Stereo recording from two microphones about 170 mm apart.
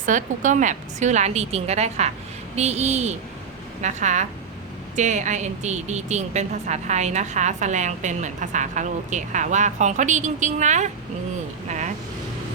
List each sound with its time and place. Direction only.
0.0 s speech: 50° right (ahead or behind)